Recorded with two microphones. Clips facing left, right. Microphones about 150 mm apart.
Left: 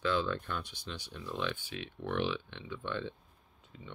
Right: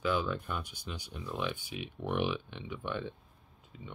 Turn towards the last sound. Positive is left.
turn(degrees=-15)  # may be behind; listen again after turning